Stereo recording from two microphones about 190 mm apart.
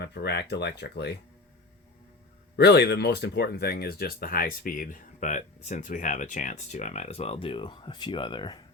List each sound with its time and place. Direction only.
0.0 s speech: 60° left (ahead or behind)
2.6 s speech: 60° left (ahead or behind); by 8.5 s 25° left (ahead or behind)